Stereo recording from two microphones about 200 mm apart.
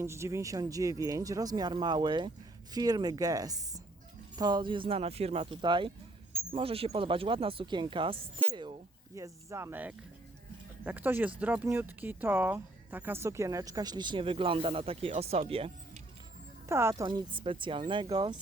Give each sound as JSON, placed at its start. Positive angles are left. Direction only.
{"t": 0.0, "sound": "speech", "side_deg": -15}
{"t": 16.6, "sound": "speech", "side_deg": -15}